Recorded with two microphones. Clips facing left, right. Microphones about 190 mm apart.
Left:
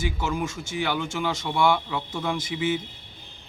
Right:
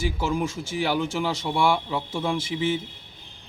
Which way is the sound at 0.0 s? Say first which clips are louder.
Right 2 dB; 35° right (ahead or behind).